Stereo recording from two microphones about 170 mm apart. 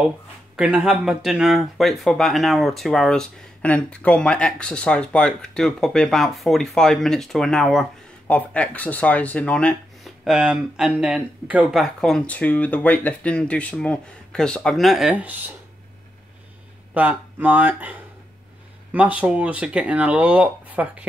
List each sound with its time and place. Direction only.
0.6 s speech: 5° right (ahead or behind)
16.9 s speech: 10° right (ahead or behind)